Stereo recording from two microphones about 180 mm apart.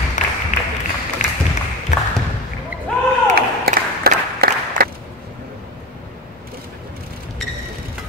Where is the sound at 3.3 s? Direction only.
60° right (ahead or behind).